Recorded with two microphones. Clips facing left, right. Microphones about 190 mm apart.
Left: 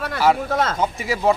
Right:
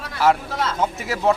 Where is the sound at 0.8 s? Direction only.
Centre (ahead or behind).